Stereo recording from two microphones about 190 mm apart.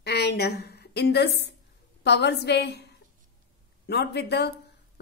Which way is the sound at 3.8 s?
60° left (ahead or behind).